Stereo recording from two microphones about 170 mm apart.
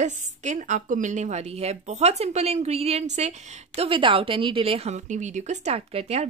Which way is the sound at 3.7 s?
30° right (ahead or behind).